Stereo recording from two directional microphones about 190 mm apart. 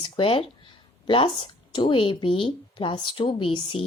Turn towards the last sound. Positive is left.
turn(degrees=30)  # may be behind; listen again after turning